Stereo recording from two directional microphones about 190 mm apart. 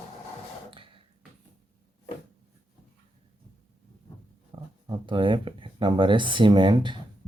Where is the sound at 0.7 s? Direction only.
25° right (ahead or behind).